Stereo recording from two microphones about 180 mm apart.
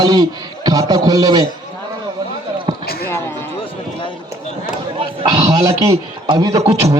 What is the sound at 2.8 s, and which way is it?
Basketball bounce, 60° left (ahead or behind).